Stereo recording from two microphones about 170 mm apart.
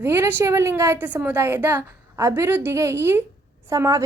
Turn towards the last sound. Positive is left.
turn(degrees=-20)  # may be behind; listen again after turning